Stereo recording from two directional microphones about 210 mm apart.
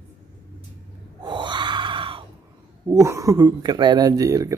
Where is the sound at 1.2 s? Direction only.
20° right (ahead or behind).